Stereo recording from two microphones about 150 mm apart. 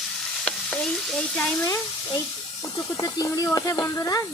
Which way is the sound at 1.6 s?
20° left (ahead or behind).